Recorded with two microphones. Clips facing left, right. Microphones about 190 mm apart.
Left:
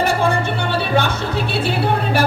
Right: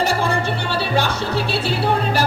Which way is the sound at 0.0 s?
55° left (ahead or behind).